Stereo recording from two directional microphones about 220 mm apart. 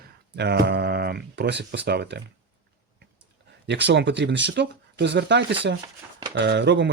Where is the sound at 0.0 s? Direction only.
45° right (ahead or behind).